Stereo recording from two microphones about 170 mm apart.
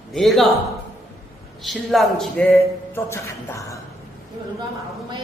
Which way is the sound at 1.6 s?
Centre (ahead or behind).